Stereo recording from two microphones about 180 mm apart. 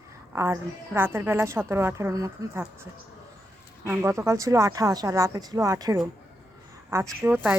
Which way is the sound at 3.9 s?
15° right (ahead or behind).